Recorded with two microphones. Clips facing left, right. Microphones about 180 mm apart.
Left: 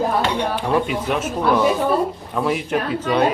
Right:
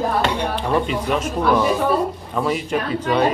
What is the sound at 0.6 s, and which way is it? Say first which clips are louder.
Speech: even; 5° left (ahead or behind).